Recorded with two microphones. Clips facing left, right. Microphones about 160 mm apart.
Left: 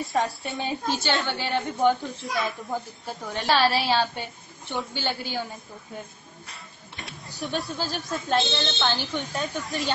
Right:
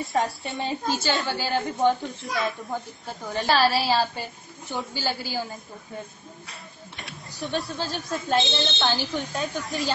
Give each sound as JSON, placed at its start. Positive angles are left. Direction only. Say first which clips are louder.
{"t": 0.0, "sound": "a woman's voice", "louder": "even", "side_deg": 0}
{"t": 6.4, "sound": "speech", "louder": "right 2 dB", "side_deg": 0}